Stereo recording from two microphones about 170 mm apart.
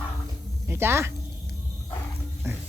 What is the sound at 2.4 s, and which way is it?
Music, 15° right (ahead or behind).